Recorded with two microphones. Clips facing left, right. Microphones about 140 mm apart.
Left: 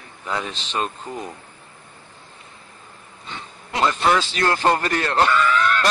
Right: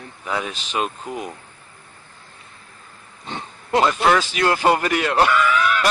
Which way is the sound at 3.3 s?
40° right (ahead or behind).